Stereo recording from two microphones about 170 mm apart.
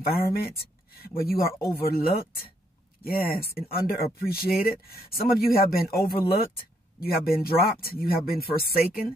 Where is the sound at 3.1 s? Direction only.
60° left (ahead or behind).